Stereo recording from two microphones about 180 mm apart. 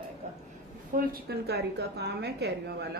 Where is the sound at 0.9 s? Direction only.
65° right (ahead or behind).